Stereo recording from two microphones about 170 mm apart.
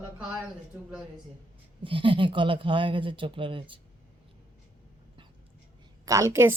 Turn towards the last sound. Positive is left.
turn(degrees=-15)  # may be behind; listen again after turning